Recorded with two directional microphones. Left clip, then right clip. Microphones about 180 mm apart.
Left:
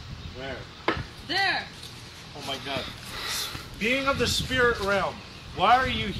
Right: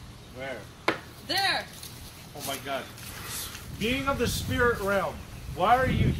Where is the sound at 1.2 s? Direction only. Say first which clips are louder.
Left 1 dB; centre (ahead or behind).